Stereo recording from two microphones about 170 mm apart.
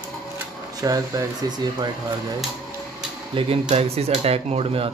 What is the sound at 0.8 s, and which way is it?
Speech, 20° right (ahead or behind).